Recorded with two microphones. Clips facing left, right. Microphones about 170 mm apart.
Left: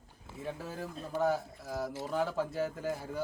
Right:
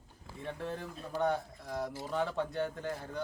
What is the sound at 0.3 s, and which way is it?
Speech, 5° left (ahead or behind).